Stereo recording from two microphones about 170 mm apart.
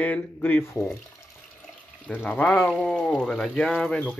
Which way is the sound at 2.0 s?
10° left (ahead or behind).